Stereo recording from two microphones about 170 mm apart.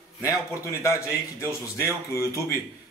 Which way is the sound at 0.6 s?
15° left (ahead or behind).